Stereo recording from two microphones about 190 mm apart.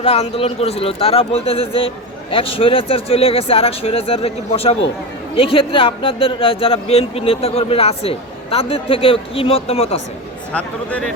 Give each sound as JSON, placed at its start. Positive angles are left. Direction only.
{"t": 0.0, "sound": "speech", "side_deg": 35}
{"t": 10.5, "sound": "speech", "side_deg": 5}